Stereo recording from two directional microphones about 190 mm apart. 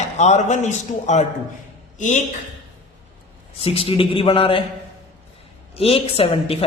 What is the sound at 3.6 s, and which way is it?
Speech, 30° left (ahead or behind).